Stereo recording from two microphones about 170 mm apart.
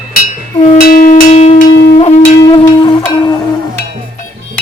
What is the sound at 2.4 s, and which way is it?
Music, 25° left (ahead or behind).